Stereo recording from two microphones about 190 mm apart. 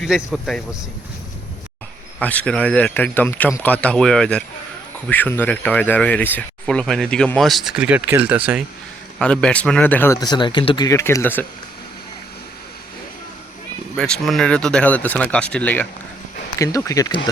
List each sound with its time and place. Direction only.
0.0 s speech: centre (ahead or behind)
2.1 s speech: 5° left (ahead or behind)
9.1 s speech: 5° left (ahead or behind)
13.9 s speech: 5° left (ahead or behind); by 17.2 s 20° left (ahead or behind)